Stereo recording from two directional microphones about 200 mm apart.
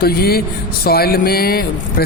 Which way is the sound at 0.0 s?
50° left (ahead or behind).